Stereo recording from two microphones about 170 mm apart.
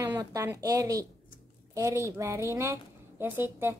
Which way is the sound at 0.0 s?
20° right (ahead or behind).